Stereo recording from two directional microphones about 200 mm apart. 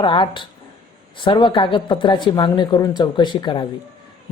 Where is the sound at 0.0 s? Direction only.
25° left (ahead or behind).